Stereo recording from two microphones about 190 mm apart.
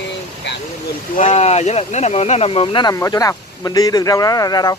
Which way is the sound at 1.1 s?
35° left (ahead or behind).